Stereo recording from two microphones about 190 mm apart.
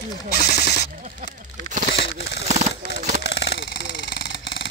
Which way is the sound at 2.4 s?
35° right (ahead or behind).